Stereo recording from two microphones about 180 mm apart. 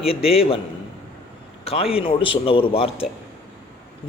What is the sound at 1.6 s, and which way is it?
A man's voice, 35° left (ahead or behind).